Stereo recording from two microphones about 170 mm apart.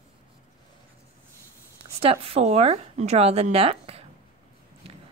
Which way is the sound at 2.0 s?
35° right (ahead or behind).